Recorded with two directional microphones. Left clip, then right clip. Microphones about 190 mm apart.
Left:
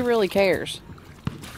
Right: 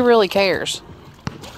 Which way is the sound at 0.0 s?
25° right (ahead or behind).